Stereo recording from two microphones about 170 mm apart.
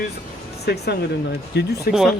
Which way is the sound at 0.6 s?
75° left (ahead or behind).